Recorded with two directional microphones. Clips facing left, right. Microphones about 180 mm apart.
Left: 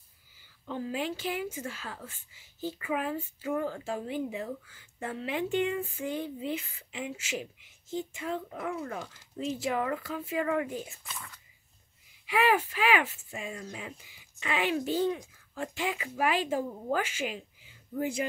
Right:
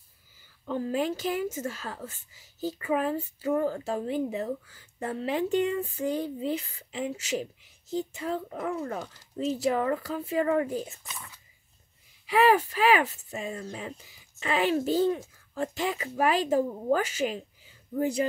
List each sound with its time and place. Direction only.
0.7 s speech: 45° right (ahead or behind)
11.1 s speech: 5° right (ahead or behind)
12.3 s speech: 35° right (ahead or behind)